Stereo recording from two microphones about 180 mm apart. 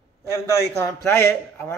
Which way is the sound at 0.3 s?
15° left (ahead or behind).